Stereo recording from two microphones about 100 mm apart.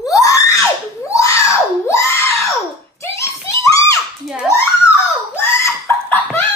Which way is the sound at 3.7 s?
35° left (ahead or behind).